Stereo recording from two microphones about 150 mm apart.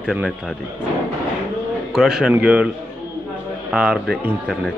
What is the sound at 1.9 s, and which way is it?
Speech, 5° right (ahead or behind).